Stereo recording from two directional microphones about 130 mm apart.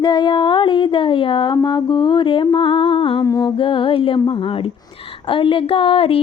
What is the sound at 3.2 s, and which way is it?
Music, 25° left (ahead or behind).